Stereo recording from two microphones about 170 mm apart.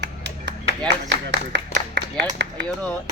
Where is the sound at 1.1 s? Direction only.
90° right.